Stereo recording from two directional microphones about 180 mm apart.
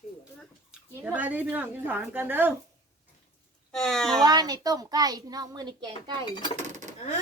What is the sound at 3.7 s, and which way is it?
Speech, 5° left (ahead or behind).